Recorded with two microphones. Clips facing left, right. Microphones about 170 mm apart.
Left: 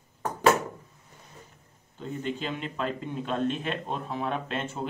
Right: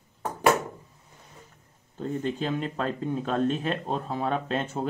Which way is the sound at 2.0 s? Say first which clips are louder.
Right 4 dB; 40° right (ahead or behind).